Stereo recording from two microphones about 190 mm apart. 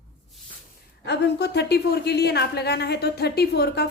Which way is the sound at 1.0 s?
65° left (ahead or behind).